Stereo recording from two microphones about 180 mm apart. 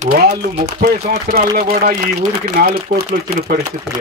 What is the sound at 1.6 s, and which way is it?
Speech, 55° right (ahead or behind).